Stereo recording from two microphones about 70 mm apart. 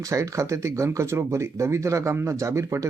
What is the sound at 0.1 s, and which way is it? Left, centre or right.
Speech, right.